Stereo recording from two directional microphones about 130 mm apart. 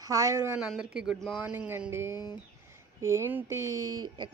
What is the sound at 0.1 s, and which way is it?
Speech, 25° right (ahead or behind).